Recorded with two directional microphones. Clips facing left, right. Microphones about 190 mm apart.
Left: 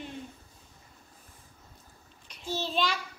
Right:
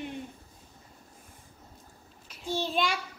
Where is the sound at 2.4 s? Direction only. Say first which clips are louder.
Right 1 dB; 10° right (ahead or behind).